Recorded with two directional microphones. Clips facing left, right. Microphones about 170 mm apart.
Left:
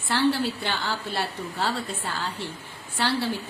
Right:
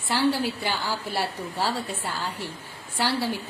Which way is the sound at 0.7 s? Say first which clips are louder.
Right 1 dB; 10° right (ahead or behind).